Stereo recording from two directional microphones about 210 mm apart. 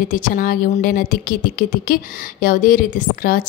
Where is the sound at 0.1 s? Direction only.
40° left (ahead or behind).